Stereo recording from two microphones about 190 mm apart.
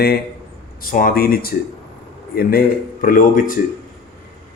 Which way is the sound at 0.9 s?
45° left (ahead or behind).